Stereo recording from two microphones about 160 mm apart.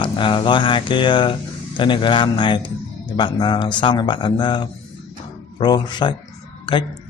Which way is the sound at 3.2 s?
30° left (ahead or behind).